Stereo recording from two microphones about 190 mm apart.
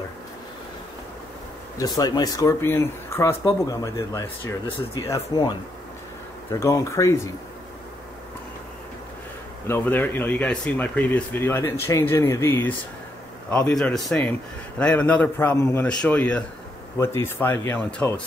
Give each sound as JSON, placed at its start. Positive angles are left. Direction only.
{"t": 1.8, "sound": "speech", "side_deg": 20}
{"t": 9.7, "sound": "a man's voice", "side_deg": 10}